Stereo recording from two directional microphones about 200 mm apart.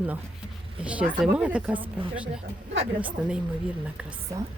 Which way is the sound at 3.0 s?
5° right (ahead or behind).